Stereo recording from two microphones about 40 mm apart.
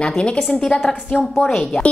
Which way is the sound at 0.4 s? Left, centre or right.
Centre.